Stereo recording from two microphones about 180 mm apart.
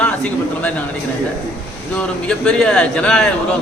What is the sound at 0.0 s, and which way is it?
Speech, 5° left (ahead or behind).